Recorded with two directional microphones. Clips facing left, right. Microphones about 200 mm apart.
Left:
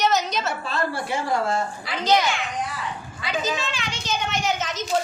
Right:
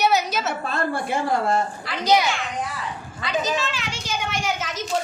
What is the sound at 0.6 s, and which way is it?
Speech, 55° right (ahead or behind).